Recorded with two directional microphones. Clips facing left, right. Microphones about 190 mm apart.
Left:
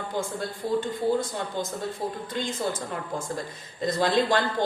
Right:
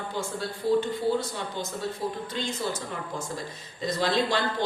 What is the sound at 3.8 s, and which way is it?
Speech, 50° left (ahead or behind).